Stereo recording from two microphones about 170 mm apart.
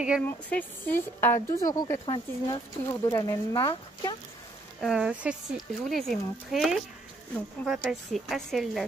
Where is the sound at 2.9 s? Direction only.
15° left (ahead or behind).